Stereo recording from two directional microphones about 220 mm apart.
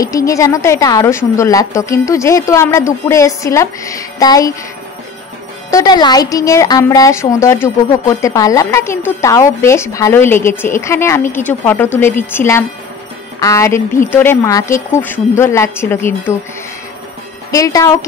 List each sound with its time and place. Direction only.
0.0 s a woman's voice: 15° left (ahead or behind)
5.7 s a woman's voice: 15° left (ahead or behind)
17.5 s a woman's voice: 15° left (ahead or behind)